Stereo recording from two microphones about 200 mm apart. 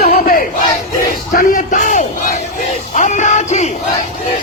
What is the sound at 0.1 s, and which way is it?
Crowd, 45° left (ahead or behind).